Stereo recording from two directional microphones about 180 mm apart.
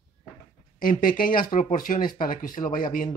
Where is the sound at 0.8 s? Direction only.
50° left (ahead or behind).